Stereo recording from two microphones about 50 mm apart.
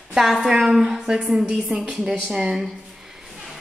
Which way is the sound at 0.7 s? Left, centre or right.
Centre.